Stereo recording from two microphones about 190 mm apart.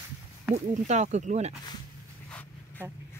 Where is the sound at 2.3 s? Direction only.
10° left (ahead or behind).